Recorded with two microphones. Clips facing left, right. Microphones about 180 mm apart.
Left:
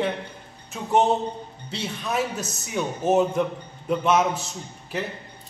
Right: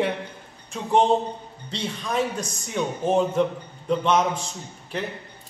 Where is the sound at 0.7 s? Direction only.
5° left (ahead or behind).